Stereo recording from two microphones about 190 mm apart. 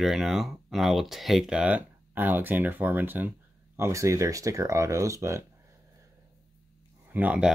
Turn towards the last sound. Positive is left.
turn(degrees=-5)  # may be behind; listen again after turning